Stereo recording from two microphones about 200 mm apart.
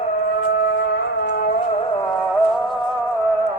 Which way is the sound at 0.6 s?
55° left (ahead or behind).